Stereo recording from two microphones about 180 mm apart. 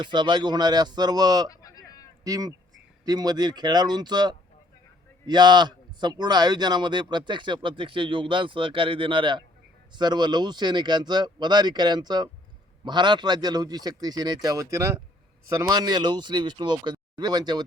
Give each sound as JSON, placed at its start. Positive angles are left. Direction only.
{"t": 0.0, "sound": "speech", "side_deg": -25}
{"t": 1.5, "sound": "a sound", "side_deg": 20}
{"t": 2.2, "sound": "speech", "side_deg": -20}